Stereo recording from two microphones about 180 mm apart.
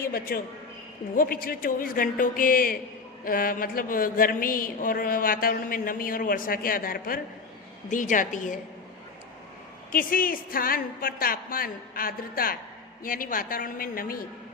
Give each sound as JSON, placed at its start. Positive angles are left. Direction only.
{"t": 0.0, "sound": "speech", "side_deg": 55}
{"t": 9.9, "sound": "speech", "side_deg": 50}